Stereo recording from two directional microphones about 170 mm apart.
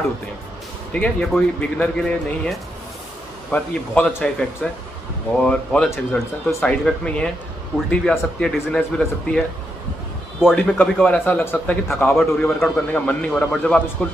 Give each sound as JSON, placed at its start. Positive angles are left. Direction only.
{"t": 0.9, "sound": "a man's voice", "side_deg": 5}
{"t": 10.4, "sound": "a man's voice", "side_deg": 5}